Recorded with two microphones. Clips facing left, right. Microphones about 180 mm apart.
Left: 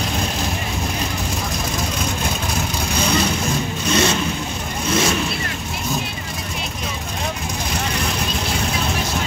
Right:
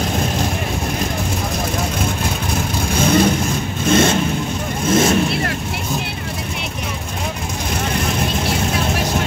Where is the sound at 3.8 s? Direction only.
50° right (ahead or behind).